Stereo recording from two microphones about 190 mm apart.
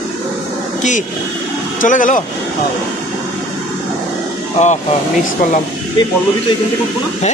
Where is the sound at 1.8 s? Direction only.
45° left (ahead or behind).